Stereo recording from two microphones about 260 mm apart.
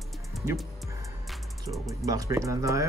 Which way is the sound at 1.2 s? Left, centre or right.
Centre.